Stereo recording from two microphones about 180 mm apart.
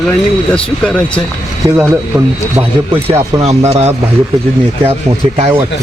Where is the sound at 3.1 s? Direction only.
35° right (ahead or behind).